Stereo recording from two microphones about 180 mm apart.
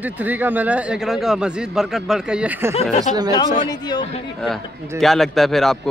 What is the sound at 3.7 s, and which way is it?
Speech, 25° left (ahead or behind).